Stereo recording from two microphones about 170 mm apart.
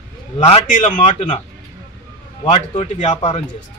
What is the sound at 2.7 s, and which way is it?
Speech, 40° left (ahead or behind).